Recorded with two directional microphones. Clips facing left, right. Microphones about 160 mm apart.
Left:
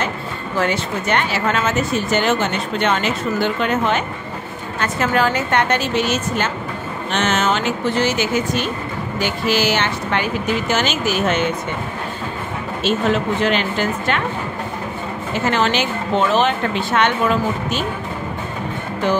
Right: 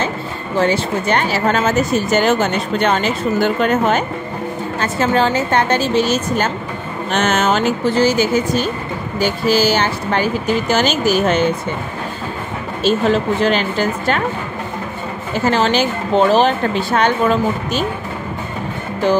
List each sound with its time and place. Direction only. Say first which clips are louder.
0.6 s speech: right 4 dB; 35° right (ahead or behind)
4.7 s speech: right 2 dB; 30° right (ahead or behind)
12.8 s speech: right 3 dB; 35° right (ahead or behind)
15.3 s speech: right 3 dB; 35° right (ahead or behind)